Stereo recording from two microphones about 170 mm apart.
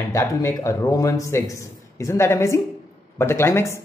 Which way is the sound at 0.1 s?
20° left (ahead or behind).